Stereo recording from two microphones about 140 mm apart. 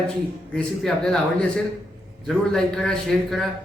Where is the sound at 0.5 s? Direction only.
5° left (ahead or behind).